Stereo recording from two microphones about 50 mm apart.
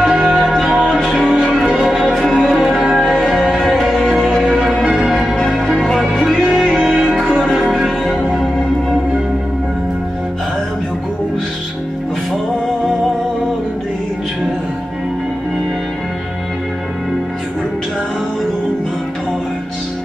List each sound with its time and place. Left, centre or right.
0.1 s music: centre
4.9 s change ringing: centre
5.3 s change ringing: centre
5.7 s music: centre